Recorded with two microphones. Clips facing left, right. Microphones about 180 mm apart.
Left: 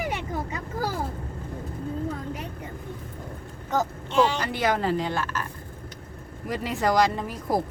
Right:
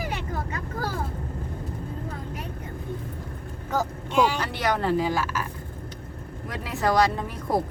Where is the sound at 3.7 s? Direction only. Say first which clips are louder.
Even; 10° right (ahead or behind).